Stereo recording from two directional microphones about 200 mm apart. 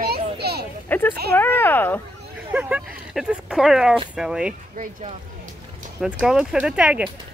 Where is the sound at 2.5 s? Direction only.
10° right (ahead or behind).